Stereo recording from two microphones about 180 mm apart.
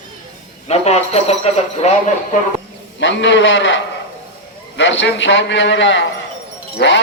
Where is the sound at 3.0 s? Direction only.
90° left.